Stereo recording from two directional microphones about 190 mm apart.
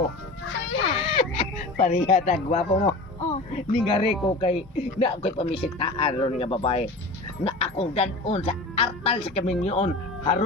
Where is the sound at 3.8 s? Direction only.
25° left (ahead or behind).